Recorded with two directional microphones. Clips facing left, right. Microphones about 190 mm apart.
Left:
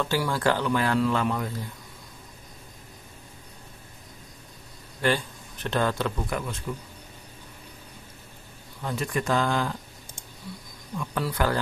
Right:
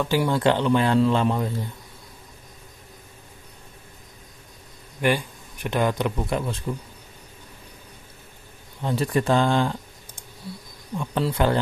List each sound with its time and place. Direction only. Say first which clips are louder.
0.0 s speech: right 4 dB; 20° right (ahead or behind)
5.0 s a man's voice: right 3 dB; 15° right (ahead or behind)
8.8 s speech: right 5 dB; 30° right (ahead or behind)
11.0 s speech: right 4 dB; 25° right (ahead or behind)